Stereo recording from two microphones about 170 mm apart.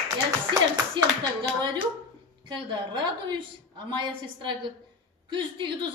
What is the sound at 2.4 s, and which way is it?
A woman's voice, 25° right (ahead or behind).